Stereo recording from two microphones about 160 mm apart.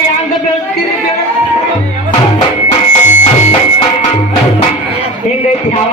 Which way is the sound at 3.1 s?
50° left (ahead or behind).